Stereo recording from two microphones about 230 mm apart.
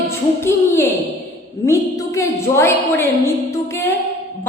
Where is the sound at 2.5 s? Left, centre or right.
Centre.